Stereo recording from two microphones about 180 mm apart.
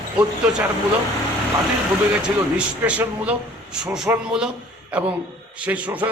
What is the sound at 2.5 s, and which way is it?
Speech, 5° right (ahead or behind).